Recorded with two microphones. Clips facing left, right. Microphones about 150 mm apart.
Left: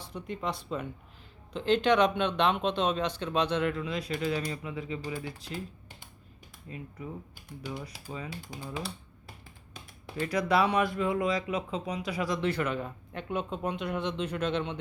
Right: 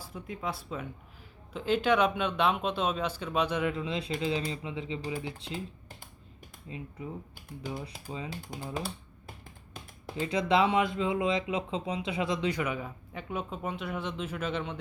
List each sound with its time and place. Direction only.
0.0 s speech: 5° right (ahead or behind)
3.8 s speech: 25° right (ahead or behind)
6.7 s speech: 20° right (ahead or behind)
8.4 s speech: 50° right (ahead or behind)
10.2 s speech: 25° right (ahead or behind); by 14.8 s 5° right (ahead or behind)